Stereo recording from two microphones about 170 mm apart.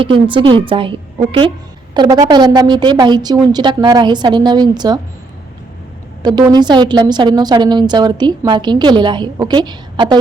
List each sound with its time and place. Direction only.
0.0 s a woman's voice: 30° right (ahead or behind)
6.2 s a woman's voice: 25° right (ahead or behind)